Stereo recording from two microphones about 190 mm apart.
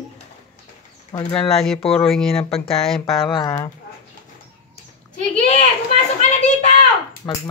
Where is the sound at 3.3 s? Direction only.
20° left (ahead or behind).